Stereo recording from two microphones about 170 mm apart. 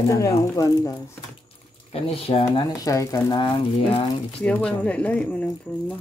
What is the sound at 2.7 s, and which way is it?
Speech, 20° left (ahead or behind).